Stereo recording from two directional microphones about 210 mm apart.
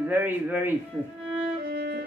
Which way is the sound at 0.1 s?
10° right (ahead or behind).